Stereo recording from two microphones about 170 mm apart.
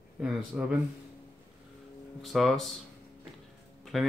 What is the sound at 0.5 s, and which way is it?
Speech, 5° right (ahead or behind).